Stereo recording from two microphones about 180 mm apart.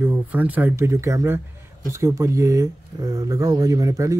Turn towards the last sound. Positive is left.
turn(degrees=-20)  # may be behind; listen again after turning